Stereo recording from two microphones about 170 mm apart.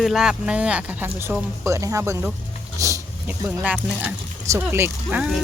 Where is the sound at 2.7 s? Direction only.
20° right (ahead or behind).